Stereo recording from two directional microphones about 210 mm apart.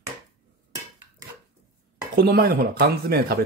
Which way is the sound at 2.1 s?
50° right (ahead or behind).